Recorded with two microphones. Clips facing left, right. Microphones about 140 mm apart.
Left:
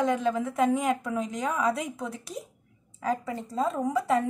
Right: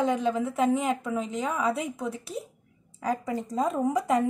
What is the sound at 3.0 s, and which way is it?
Speech, 10° right (ahead or behind).